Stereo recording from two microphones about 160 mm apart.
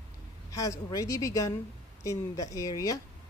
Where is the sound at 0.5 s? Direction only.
20° left (ahead or behind).